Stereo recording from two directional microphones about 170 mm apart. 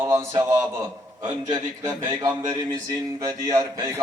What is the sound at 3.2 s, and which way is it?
Speech, 20° right (ahead or behind).